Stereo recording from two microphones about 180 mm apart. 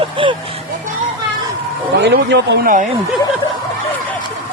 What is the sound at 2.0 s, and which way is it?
Speech, 70° right (ahead or behind).